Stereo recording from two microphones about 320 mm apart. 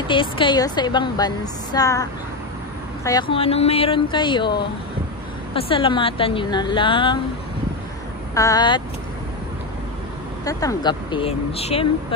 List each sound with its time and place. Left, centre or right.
0.1 s a woman's voice: centre
8.4 s a woman's voice: centre
10.4 s a woman's voice: centre